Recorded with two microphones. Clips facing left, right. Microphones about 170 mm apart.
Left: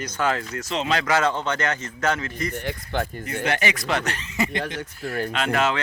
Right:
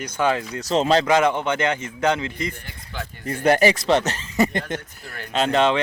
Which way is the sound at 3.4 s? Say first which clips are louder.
Right 9 dB; 40° right (ahead or behind).